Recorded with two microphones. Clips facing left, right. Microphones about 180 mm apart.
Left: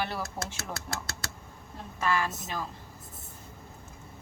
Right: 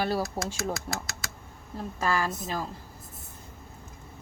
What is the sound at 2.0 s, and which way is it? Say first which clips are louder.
Speech: right 1 dB; 35° right (ahead or behind).